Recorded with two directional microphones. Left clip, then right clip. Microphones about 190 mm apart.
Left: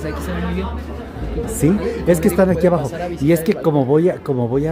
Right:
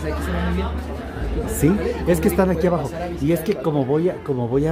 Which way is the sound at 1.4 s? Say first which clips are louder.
Left 2 dB; centre (ahead or behind).